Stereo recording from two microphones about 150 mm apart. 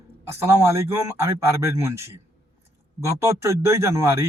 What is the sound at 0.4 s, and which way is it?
A man's voice, 20° right (ahead or behind).